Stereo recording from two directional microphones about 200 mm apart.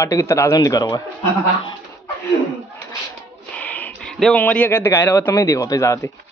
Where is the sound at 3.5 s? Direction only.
5° left (ahead or behind).